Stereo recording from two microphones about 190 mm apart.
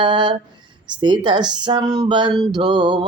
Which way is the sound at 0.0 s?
25° right (ahead or behind).